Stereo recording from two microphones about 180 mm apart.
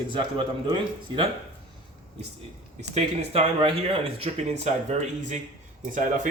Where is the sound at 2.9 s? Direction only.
35° right (ahead or behind).